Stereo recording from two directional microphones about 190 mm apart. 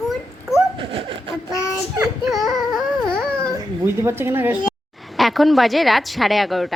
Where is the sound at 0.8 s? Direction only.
30° right (ahead or behind).